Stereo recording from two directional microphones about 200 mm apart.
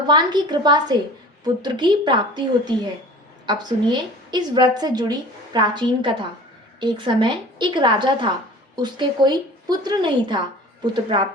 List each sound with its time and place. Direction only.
0.1 s a woman's voice: 20° right (ahead or behind)